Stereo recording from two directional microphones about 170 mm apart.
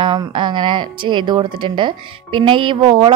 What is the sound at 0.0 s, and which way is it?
Speech, 25° right (ahead or behind).